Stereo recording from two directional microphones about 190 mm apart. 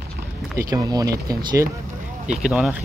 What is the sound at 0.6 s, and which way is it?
Speech, 20° right (ahead or behind).